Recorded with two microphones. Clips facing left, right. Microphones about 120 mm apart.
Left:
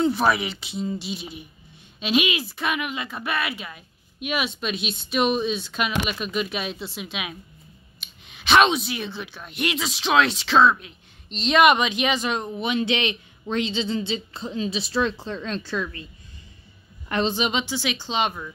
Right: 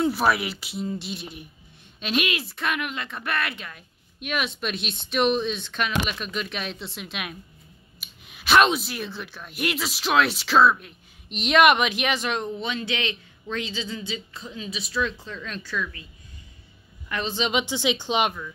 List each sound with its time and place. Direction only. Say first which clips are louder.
0.0 s speech: left 1 dB; 5° right (ahead or behind); by 16.0 s 30° left (ahead or behind)
17.5 s speech: right 2 dB; 15° right (ahead or behind)